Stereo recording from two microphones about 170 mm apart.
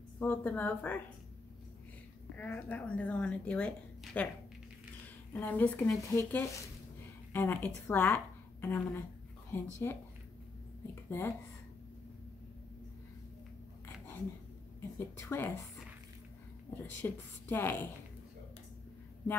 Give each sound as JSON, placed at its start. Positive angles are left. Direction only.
{"t": 0.2, "sound": "speech", "side_deg": 10}
{"t": 2.3, "sound": "speech", "side_deg": 10}
{"t": 5.3, "sound": "speech", "side_deg": 10}
{"t": 11.1, "sound": "speech", "side_deg": 10}
{"t": 14.8, "sound": "a woman's voice", "side_deg": 15}
{"t": 16.7, "sound": "speech", "side_deg": 15}